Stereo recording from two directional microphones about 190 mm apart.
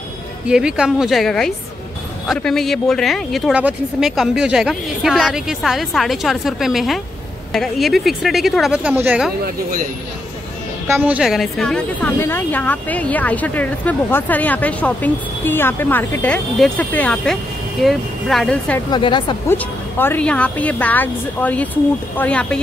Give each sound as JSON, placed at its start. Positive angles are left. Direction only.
{"t": 0.5, "sound": "speech", "side_deg": -5}
{"t": 10.9, "sound": "a woman's voice", "side_deg": -10}
{"t": 18.9, "sound": "speech", "side_deg": 25}
{"t": 19.5, "sound": "a woman's voice", "side_deg": 10}